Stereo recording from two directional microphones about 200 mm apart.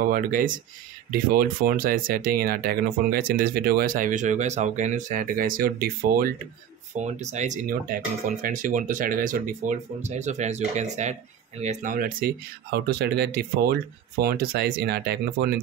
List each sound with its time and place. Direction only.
0.0 s speech: 45° right (ahead or behind)
7.0 s speech: 35° right (ahead or behind); by 15.6 s 50° right (ahead or behind)